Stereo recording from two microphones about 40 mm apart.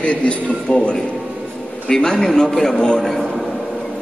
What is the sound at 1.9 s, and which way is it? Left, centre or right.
Speech, centre.